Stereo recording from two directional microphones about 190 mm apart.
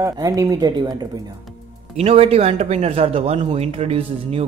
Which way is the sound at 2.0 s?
30° right (ahead or behind).